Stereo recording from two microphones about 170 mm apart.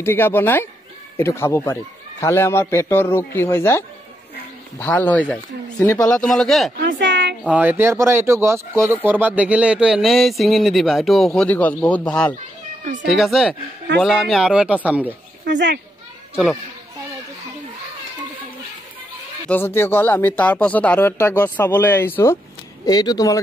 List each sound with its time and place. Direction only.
0.0 s speech: 15° left (ahead or behind)
6.8 s speech: 90° right
7.4 s speech: 10° right (ahead or behind)
19.5 s speech: 15° left (ahead or behind)